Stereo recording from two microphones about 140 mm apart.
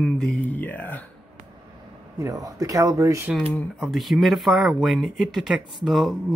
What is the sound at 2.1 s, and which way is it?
Speech, 25° right (ahead or behind).